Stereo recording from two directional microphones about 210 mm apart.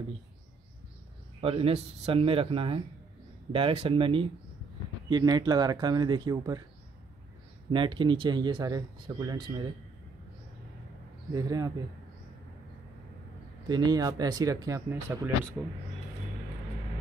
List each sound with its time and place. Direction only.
1.4 s speech: 25° right (ahead or behind)
7.7 s speech: 25° right (ahead or behind)
11.3 s speech: 15° right (ahead or behind)
13.7 s speech: 20° right (ahead or behind); by 15.7 s 5° right (ahead or behind)